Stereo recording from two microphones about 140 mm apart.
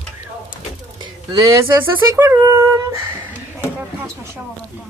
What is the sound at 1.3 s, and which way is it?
Speech, 25° right (ahead or behind).